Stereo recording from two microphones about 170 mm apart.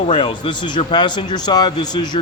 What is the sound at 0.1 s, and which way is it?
A man's voice, 30° left (ahead or behind).